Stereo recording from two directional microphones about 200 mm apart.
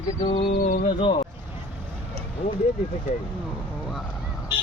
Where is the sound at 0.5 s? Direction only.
45° left (ahead or behind).